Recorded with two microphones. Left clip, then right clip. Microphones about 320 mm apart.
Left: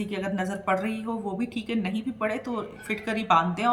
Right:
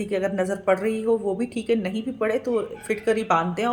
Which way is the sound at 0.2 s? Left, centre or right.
Left.